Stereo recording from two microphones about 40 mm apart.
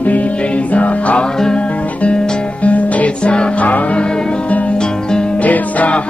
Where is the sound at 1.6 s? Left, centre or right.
Left.